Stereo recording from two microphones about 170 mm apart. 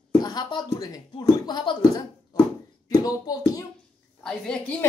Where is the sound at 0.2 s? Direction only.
25° left (ahead or behind).